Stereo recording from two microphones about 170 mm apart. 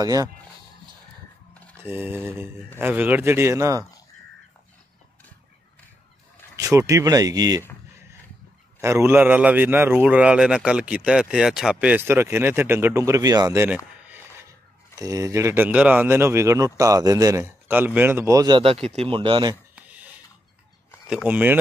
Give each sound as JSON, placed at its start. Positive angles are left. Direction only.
{"t": 0.0, "sound": "speech", "side_deg": -20}
{"t": 1.8, "sound": "a man's voice", "side_deg": -15}
{"t": 6.5, "sound": "speech", "side_deg": -20}
{"t": 8.8, "sound": "a man's voice", "side_deg": -15}
{"t": 15.0, "sound": "a man's voice", "side_deg": -20}
{"t": 18.6, "sound": "speech", "side_deg": -35}
{"t": 19.7, "sound": "a sound", "side_deg": -10}
{"t": 21.1, "sound": "a man's voice", "side_deg": -5}